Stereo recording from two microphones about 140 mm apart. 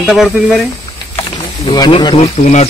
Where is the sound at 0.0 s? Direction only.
5° right (ahead or behind).